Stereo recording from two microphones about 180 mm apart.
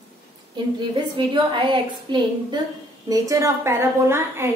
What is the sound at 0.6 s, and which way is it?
A woman's voice, 25° right (ahead or behind).